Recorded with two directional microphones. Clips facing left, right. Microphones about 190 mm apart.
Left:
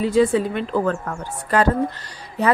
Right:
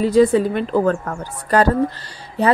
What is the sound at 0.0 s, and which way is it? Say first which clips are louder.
A woman's voice: right 3 dB; 40° right (ahead or behind).